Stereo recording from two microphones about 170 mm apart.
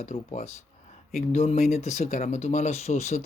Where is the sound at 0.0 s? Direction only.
40° left (ahead or behind).